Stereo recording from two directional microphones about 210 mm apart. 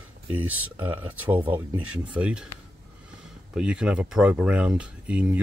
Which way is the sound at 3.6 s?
5° right (ahead or behind).